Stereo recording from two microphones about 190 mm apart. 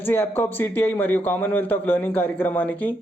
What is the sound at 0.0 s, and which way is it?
Speech, 10° left (ahead or behind).